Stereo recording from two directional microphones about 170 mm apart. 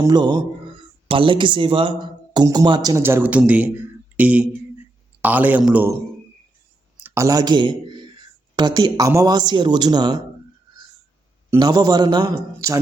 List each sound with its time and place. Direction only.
0.0 s a man's voice: 25° right (ahead or behind)
7.0 s a sound: 15° right (ahead or behind)
8.5 s speech: 25° right (ahead or behind)
11.5 s speech: 20° right (ahead or behind)